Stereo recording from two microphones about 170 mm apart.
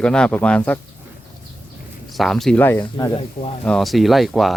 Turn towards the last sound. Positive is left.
turn(degrees=0)  # may be behind; listen again after turning